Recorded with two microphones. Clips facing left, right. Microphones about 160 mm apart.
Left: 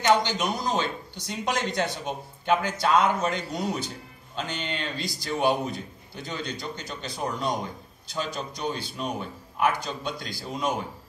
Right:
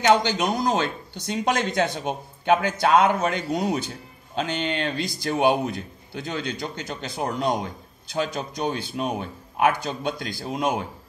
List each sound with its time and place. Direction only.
0.7 s speech: 55° right (ahead or behind)